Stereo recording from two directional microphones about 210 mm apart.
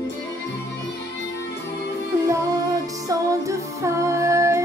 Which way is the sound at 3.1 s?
15° right (ahead or behind).